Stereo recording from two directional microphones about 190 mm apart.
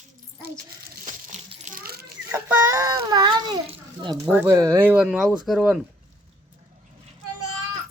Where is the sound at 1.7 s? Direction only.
50° right (ahead or behind).